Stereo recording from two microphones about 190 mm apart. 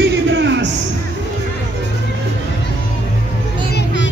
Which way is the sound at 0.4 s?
70° right (ahead or behind).